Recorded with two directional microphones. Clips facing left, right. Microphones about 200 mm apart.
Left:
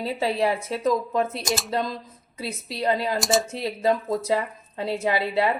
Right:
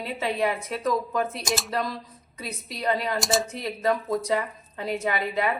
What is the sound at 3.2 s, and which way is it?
Speech, centre (ahead or behind).